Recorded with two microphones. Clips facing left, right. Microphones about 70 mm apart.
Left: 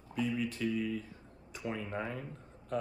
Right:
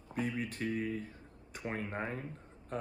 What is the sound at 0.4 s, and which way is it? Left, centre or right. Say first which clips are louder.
Speech: left 2 dB; right.